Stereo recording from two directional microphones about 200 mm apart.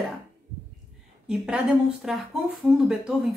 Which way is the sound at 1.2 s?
5° right (ahead or behind).